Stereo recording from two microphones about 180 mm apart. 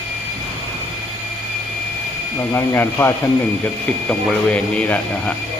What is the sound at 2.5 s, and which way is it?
Speech, 10° left (ahead or behind).